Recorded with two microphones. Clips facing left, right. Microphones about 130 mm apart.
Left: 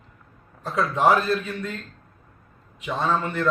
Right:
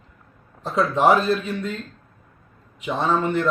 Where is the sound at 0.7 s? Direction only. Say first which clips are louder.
Right 2 dB; 25° right (ahead or behind).